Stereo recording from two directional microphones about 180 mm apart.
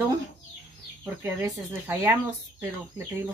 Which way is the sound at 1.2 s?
15° right (ahead or behind).